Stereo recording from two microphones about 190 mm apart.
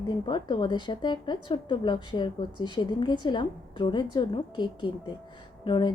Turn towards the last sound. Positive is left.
turn(degrees=25)  # may be behind; listen again after turning